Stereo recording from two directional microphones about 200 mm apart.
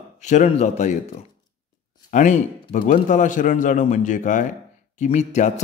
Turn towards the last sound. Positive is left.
turn(degrees=35)  # may be behind; listen again after turning